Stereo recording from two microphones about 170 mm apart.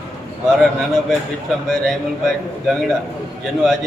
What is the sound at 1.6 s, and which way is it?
Speech, 5° left (ahead or behind).